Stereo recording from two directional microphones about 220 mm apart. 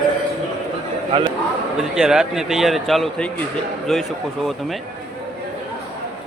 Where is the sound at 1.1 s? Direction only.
25° right (ahead or behind).